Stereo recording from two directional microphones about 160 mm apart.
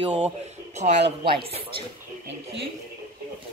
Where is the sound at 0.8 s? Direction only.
45° right (ahead or behind).